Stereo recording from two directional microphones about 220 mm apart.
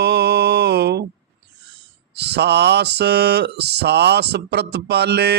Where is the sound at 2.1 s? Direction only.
50° right (ahead or behind).